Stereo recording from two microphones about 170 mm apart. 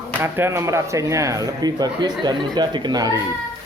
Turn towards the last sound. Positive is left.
turn(degrees=-25)  # may be behind; listen again after turning